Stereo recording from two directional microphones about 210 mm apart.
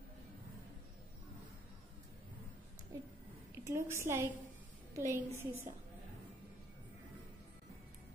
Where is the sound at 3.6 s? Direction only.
10° right (ahead or behind).